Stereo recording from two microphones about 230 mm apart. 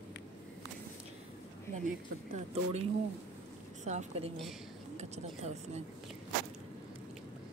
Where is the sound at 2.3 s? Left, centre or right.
Right.